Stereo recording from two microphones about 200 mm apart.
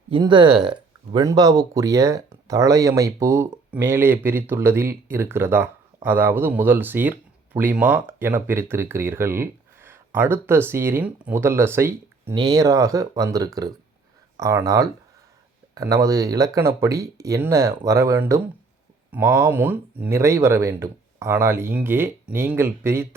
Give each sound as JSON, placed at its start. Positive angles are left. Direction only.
{"t": 0.1, "sound": "speech", "side_deg": -25}